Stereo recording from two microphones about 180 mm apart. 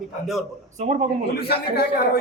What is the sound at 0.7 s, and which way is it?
Speech, 35° right (ahead or behind).